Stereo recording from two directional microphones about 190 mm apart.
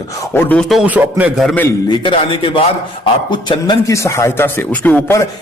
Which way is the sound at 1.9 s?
25° left (ahead or behind).